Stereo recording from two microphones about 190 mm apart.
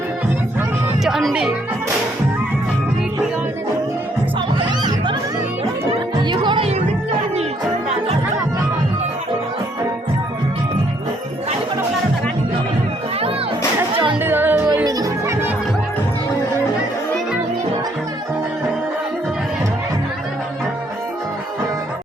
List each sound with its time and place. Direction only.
1.0 s music: centre (ahead or behind)
4.6 s music: 25° right (ahead or behind)
13.9 s music: 25° right (ahead or behind)
14.2 s music: 10° right (ahead or behind)